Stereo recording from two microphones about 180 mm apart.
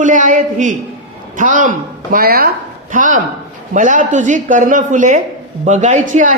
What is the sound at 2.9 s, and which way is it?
A man's voice, 45° right (ahead or behind).